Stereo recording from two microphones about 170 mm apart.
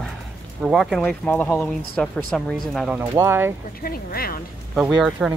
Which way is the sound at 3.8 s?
60° left (ahead or behind).